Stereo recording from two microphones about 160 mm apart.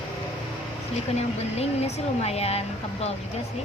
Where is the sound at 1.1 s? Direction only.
40° left (ahead or behind).